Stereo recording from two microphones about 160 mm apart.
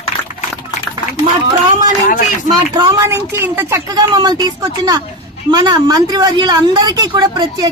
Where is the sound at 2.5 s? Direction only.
25° right (ahead or behind).